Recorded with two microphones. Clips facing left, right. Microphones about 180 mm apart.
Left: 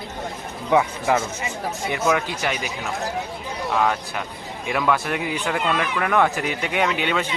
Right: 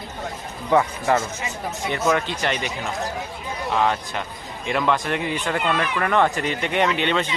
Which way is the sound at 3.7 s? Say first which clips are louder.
Even; 5° left (ahead or behind).